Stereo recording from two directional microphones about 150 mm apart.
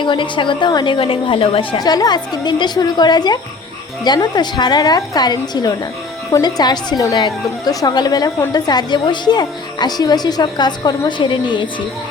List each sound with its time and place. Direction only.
0.0 s a woman's voice: 30° left (ahead or behind)